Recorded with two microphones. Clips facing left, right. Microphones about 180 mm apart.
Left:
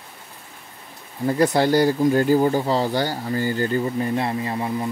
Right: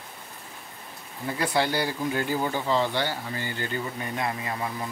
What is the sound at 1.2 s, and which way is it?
Speech, 40° left (ahead or behind).